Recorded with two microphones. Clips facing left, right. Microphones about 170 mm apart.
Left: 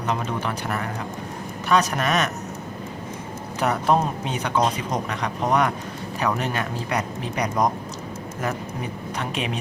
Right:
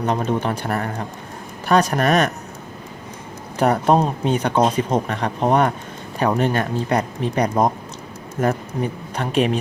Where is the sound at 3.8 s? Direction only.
35° right (ahead or behind).